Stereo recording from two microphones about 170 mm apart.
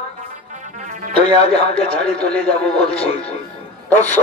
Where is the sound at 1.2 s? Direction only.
35° left (ahead or behind).